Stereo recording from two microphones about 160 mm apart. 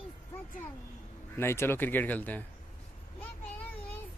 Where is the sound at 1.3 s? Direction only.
15° left (ahead or behind).